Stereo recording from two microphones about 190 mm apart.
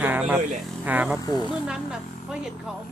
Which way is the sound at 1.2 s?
20° left (ahead or behind).